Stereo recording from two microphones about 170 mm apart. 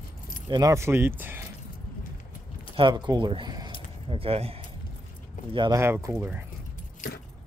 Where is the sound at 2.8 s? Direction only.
25° right (ahead or behind).